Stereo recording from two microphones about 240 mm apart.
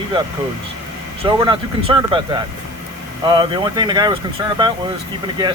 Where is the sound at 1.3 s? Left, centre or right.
Centre.